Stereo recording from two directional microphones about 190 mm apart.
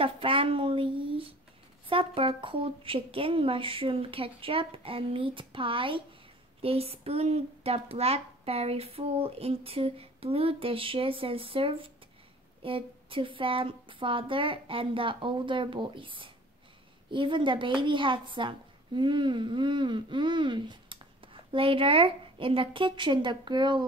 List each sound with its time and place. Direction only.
0.0 s a woman's voice: 30° right (ahead or behind)